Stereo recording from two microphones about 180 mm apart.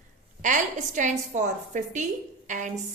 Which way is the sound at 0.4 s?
45° right (ahead or behind).